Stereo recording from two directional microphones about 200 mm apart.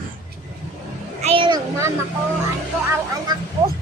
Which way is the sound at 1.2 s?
25° right (ahead or behind).